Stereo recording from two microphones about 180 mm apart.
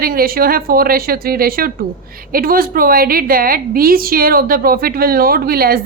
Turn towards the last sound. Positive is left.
turn(degrees=-55)  # may be behind; listen again after turning